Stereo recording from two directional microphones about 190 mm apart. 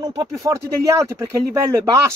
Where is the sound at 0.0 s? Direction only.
20° right (ahead or behind).